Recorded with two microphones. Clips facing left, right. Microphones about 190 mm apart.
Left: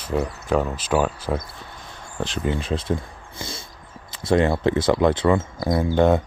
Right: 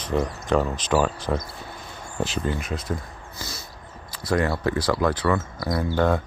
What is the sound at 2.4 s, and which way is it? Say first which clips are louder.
Speech: left 3 dB; 25° left (ahead or behind).